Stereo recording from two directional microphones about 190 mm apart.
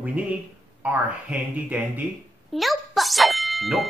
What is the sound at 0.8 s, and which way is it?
Speech, 5° right (ahead or behind).